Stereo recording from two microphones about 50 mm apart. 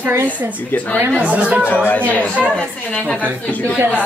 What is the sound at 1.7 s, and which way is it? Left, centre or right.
Speech, left.